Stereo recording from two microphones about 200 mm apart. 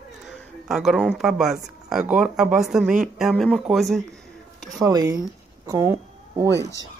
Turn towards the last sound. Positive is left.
turn(degrees=15)  # may be behind; listen again after turning